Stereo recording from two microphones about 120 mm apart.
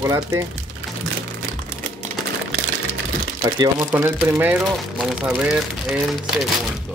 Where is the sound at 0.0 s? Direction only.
25° right (ahead or behind).